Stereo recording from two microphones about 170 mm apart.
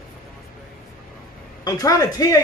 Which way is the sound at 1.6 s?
20° left (ahead or behind).